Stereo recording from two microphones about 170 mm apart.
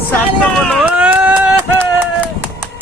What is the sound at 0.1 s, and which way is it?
Speech, 5° left (ahead or behind).